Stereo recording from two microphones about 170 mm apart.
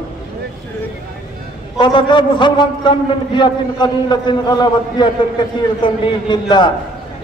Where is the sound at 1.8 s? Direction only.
25° left (ahead or behind).